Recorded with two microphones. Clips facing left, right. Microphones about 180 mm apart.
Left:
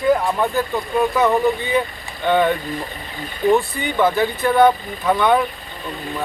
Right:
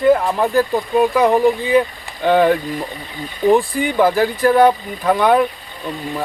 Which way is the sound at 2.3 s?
5° right (ahead or behind).